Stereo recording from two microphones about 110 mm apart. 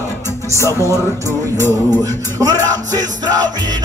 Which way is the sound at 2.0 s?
35° right (ahead or behind).